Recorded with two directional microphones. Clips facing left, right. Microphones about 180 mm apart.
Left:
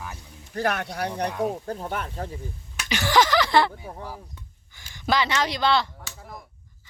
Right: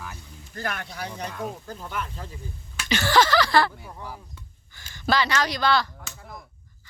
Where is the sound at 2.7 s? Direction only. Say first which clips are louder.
Even; 15° left (ahead or behind).